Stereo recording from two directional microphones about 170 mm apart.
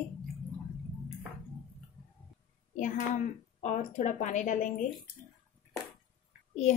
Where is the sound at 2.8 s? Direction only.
50° left (ahead or behind).